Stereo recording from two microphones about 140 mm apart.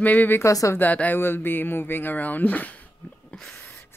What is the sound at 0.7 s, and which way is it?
Speech, 10° left (ahead or behind).